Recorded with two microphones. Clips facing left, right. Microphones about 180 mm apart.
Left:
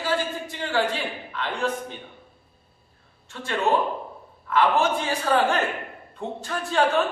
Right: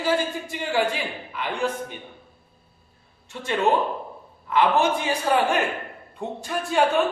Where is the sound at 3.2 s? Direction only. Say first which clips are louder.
Right 2 dB; 15° right (ahead or behind).